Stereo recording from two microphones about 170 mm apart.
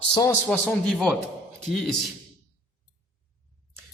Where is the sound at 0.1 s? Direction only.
25° left (ahead or behind).